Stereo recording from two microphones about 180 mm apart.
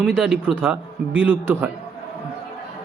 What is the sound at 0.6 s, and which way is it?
A man's voice, 10° right (ahead or behind).